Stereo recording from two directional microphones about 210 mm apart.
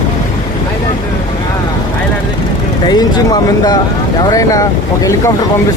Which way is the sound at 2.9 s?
20° left (ahead or behind).